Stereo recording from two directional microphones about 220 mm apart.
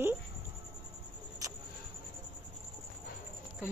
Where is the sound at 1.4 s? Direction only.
15° right (ahead or behind).